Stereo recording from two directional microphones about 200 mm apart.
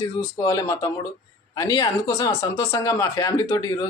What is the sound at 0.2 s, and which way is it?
Speech, 15° left (ahead or behind).